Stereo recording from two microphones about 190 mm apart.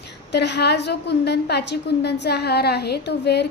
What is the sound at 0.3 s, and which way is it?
A woman's voice, 65° left (ahead or behind).